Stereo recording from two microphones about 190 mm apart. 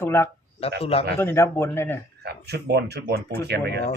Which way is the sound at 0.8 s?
30° left (ahead or behind).